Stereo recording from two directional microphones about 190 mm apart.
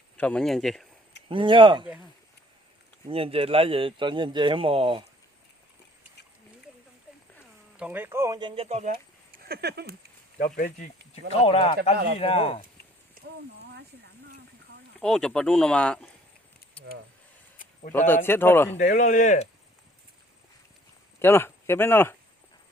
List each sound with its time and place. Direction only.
0.2 s speech: 5° left (ahead or behind)
1.3 s speech: 25° right (ahead or behind)
3.1 s speech: 30° right (ahead or behind)
7.8 s speech: 10° right (ahead or behind); by 8.9 s 35° right (ahead or behind)
9.5 s speech: 60° right (ahead or behind)
10.6 s speech: 45° left (ahead or behind)
11.1 s speech: 30° left (ahead or behind)
15.0 s speech: 5° left (ahead or behind)
17.9 s speech: 10° left (ahead or behind)
18.8 s speech: 40° left (ahead or behind)
21.2 s speech: 10° left (ahead or behind)